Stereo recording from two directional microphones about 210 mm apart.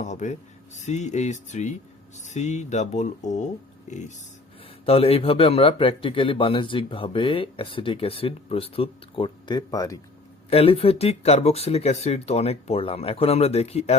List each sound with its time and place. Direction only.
0.0 s a man's voice: 35° left (ahead or behind)